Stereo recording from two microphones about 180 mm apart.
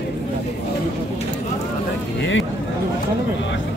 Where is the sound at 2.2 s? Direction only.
90° left.